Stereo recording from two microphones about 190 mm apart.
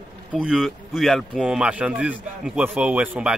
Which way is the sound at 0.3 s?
5° right (ahead or behind).